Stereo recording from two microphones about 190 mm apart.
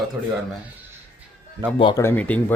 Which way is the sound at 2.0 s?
10° left (ahead or behind).